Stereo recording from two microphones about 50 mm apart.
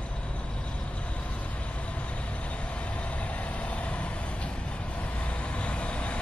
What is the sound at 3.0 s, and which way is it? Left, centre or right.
Vehicle, left.